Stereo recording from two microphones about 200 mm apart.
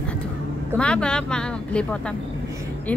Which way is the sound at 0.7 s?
5° left (ahead or behind).